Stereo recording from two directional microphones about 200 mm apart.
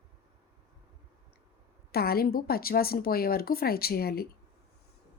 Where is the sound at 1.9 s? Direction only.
50° left (ahead or behind).